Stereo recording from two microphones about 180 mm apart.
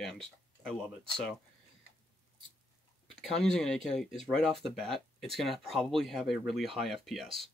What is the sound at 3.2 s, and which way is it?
Speech, 5° left (ahead or behind).